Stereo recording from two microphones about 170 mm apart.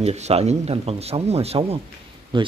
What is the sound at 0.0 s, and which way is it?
A woman's voice, 40° right (ahead or behind).